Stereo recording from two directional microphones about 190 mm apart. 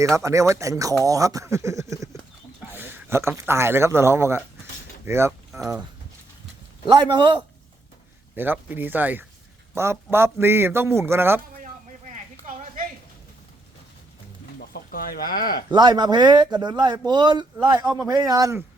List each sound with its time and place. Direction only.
0.0 s a man's voice: 15° right (ahead or behind)
6.8 s a man's voice: 25° right (ahead or behind)
8.4 s a man's voice: 10° right (ahead or behind)
11.6 s a sound: 40° right (ahead or behind)
14.6 s speech: 50° left (ahead or behind)
15.7 s a man's voice: 25° right (ahead or behind)